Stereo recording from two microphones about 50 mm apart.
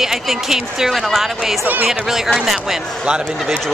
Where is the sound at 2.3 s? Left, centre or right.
Centre.